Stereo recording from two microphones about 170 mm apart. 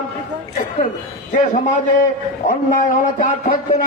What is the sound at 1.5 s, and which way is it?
A man's voice, 50° left (ahead or behind).